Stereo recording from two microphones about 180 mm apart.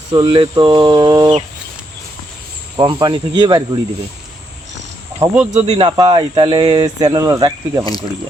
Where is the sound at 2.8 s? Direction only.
25° right (ahead or behind).